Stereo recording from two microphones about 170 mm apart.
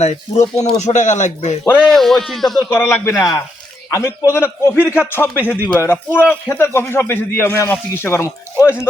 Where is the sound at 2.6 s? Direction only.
15° left (ahead or behind).